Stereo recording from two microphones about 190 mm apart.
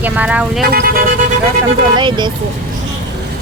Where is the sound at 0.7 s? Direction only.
50° right (ahead or behind).